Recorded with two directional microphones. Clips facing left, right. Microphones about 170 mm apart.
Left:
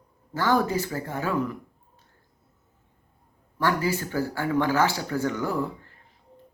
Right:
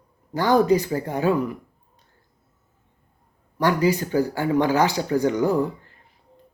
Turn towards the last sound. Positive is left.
turn(degrees=-15)  # may be behind; listen again after turning